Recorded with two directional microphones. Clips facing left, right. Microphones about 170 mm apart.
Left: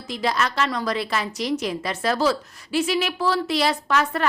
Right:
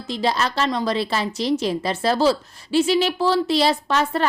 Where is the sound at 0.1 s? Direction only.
30° right (ahead or behind).